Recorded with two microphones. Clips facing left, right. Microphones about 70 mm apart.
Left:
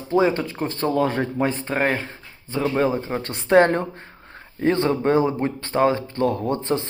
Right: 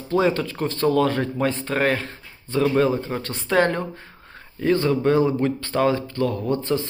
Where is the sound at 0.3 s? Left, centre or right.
Left.